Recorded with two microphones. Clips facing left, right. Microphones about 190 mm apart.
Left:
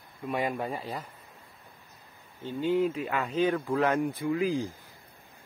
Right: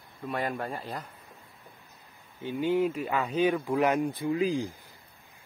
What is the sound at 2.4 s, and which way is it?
Speech, 10° right (ahead or behind).